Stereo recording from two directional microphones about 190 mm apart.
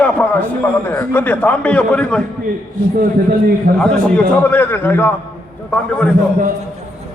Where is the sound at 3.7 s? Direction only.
5° left (ahead or behind).